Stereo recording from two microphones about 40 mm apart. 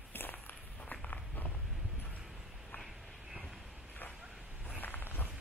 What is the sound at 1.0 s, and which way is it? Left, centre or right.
Walk, left.